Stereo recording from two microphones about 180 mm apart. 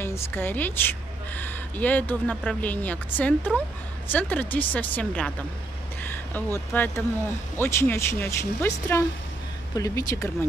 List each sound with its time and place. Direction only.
0.0 s a woman's voice: 10° left (ahead or behind)